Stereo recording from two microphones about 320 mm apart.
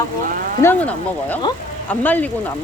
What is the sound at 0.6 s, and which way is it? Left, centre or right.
Speech, centre.